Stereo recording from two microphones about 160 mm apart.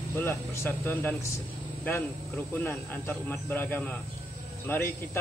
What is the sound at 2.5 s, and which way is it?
Speech, 10° left (ahead or behind).